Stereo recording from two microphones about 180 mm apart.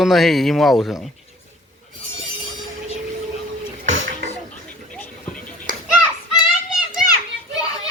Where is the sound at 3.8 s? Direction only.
90° right.